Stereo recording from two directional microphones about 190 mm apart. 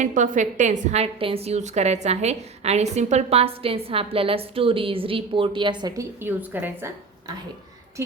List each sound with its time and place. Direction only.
0.0 s a woman's voice: 40° right (ahead or behind); by 6.1 s 25° right (ahead or behind)
6.2 s a woman's voice: 10° right (ahead or behind)